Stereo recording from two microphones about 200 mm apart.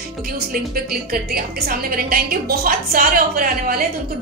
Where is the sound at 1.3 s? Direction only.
50° right (ahead or behind).